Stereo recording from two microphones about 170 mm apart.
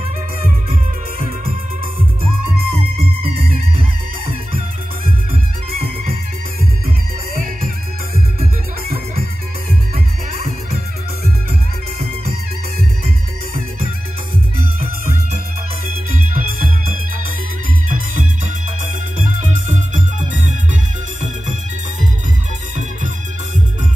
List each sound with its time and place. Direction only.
7.3 s music: 55° right (ahead or behind)
16.1 s music: 50° right (ahead or behind)
17.8 s music: 50° right (ahead or behind)